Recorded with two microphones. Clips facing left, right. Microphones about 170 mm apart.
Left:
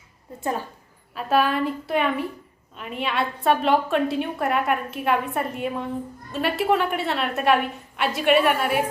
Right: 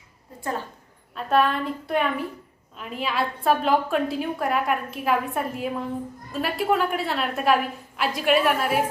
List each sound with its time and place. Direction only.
0.3 s a woman's voice: 20° left (ahead or behind)
1.1 s a woman's voice: 5° left (ahead or behind)